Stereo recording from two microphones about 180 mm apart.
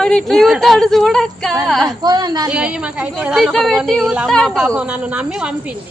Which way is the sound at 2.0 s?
25° right (ahead or behind).